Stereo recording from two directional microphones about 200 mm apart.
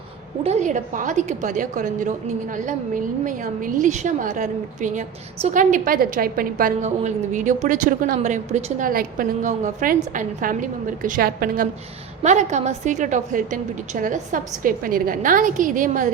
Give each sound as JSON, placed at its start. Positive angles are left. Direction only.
{"t": 0.4, "sound": "a woman's voice", "side_deg": -35}